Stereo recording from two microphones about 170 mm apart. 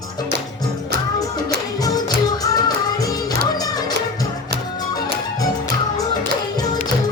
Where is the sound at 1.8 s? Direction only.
20° left (ahead or behind).